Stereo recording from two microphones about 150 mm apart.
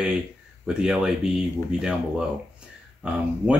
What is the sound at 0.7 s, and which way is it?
Speech, 5° right (ahead or behind).